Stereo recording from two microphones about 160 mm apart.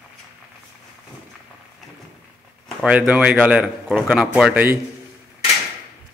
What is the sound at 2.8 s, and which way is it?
A man's voice, 10° right (ahead or behind).